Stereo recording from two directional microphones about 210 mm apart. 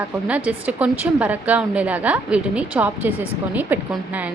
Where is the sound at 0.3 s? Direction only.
5° right (ahead or behind).